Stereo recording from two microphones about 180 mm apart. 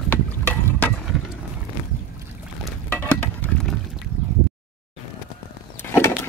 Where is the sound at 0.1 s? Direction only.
10° left (ahead or behind).